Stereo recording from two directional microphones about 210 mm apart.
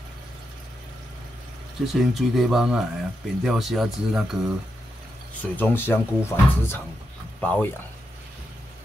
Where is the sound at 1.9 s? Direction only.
Centre (ahead or behind).